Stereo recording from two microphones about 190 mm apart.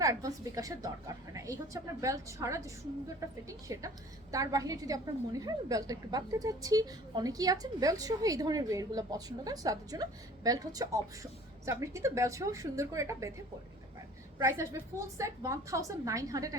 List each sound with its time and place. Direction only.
0.0 s a woman's voice: 15° right (ahead or behind)
3.7 s a woman's voice: 15° right (ahead or behind)
14.3 s a woman's voice: 15° right (ahead or behind)